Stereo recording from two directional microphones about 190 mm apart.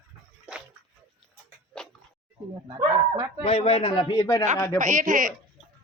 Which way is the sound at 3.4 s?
30° left (ahead or behind).